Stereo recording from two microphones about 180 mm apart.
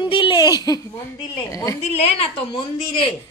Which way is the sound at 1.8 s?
35° left (ahead or behind).